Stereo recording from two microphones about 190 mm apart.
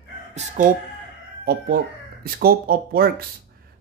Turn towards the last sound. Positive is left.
turn(degrees=-50)  # may be behind; listen again after turning